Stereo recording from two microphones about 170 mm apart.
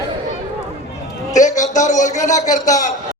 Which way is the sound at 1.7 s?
45° left (ahead or behind).